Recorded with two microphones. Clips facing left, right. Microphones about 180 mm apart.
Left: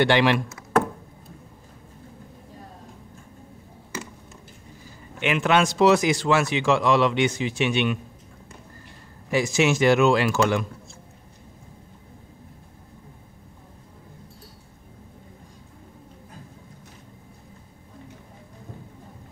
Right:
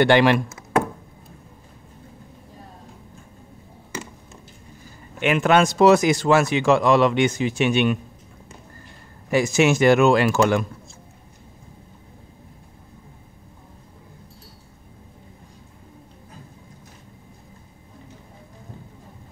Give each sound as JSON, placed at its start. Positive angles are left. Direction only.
{"t": 0.0, "sound": "speech", "side_deg": -50}
{"t": 5.2, "sound": "speech", "side_deg": -45}
{"t": 9.3, "sound": "speech", "side_deg": -50}